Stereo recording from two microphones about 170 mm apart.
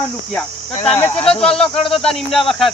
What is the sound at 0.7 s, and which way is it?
Speech, 35° left (ahead or behind).